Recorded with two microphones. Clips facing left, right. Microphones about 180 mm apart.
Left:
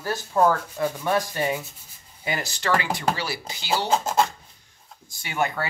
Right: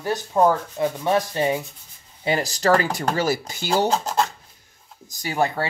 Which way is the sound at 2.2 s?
35° right (ahead or behind).